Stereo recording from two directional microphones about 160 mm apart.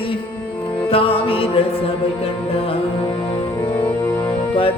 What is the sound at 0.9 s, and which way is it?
Music, 35° left (ahead or behind).